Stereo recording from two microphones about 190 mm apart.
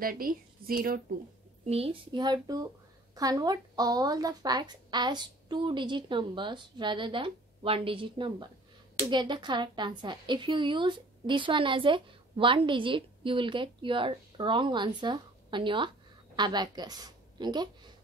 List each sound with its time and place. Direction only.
0.0 s a woman's voice: 50° right (ahead or behind)
1.7 s a woman's voice: 30° right (ahead or behind)